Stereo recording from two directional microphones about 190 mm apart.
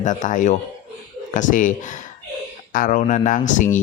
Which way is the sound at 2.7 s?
45° left (ahead or behind).